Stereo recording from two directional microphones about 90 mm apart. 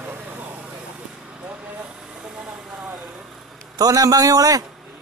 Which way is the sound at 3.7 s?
45° right (ahead or behind).